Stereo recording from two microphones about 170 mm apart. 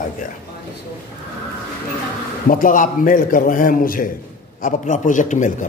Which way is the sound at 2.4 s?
50° left (ahead or behind).